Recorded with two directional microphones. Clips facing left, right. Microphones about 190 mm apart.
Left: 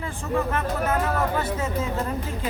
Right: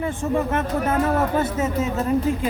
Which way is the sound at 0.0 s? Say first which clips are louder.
Right 4 dB; 25° right (ahead or behind).